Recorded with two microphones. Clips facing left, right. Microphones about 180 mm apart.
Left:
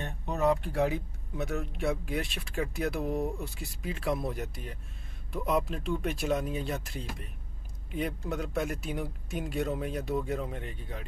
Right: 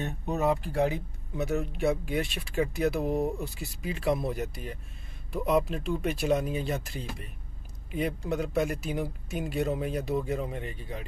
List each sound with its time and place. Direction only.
0.0 s speech: 5° right (ahead or behind)
8.3 s speech: centre (ahead or behind)